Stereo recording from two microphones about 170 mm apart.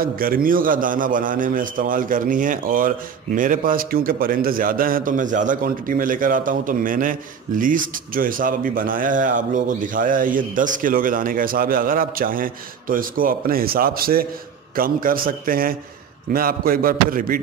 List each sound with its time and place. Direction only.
0.0 s a man's voice: 60° right (ahead or behind)